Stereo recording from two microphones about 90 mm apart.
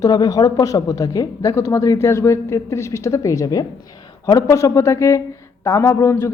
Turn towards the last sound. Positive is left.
turn(degrees=30)  # may be behind; listen again after turning